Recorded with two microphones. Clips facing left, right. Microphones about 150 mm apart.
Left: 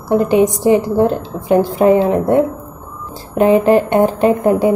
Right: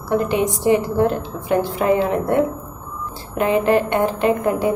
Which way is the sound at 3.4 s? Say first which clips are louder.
Left 6 dB; 35° left (ahead or behind).